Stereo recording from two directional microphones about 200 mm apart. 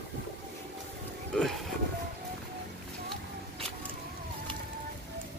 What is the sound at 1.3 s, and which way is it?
Vehicle, centre (ahead or behind).